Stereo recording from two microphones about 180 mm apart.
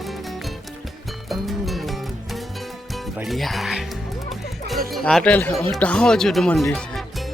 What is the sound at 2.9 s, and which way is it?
Speech, centre (ahead or behind).